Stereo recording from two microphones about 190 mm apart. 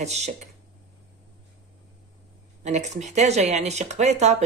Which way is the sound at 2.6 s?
35° right (ahead or behind).